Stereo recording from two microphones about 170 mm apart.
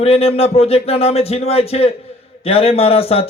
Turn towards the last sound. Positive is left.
turn(degrees=35)  # may be behind; listen again after turning